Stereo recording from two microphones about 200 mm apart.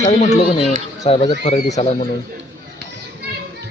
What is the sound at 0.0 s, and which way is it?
A man's voice, 35° left (ahead or behind).